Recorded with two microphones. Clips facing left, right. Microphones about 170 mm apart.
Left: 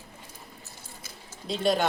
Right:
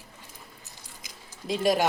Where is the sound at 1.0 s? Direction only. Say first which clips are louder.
Right 3 dB; 15° right (ahead or behind).